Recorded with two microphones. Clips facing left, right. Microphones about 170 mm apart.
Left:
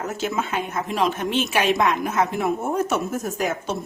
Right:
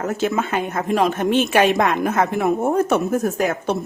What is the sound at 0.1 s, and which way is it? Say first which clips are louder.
A woman's voice: right 5 dB; 55° right (ahead or behind).